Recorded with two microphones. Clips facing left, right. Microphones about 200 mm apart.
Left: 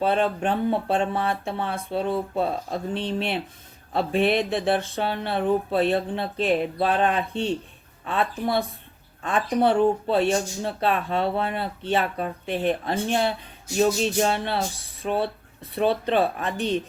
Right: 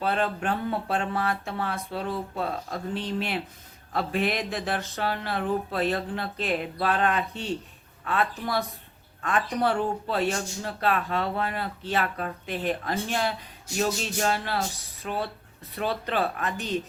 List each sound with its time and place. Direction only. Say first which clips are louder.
0.0 s speech: left 4 dB; 25° left (ahead or behind)
15.7 s speech: left 7 dB; 25° left (ahead or behind)